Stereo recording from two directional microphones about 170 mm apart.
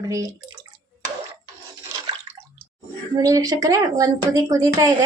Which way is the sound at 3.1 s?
20° right (ahead or behind).